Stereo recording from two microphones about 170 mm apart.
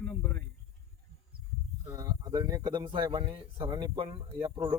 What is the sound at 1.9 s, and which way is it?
Speech, 20° right (ahead or behind).